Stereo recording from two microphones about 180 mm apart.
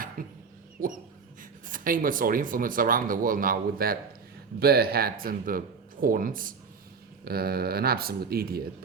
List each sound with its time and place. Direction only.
0.2 s a sound: 50° right (ahead or behind)
0.8 s dog: 50° right (ahead or behind)
1.4 s speech: 50° right (ahead or behind)